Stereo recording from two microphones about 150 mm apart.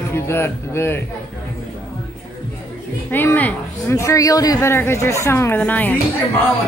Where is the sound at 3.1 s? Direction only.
15° left (ahead or behind).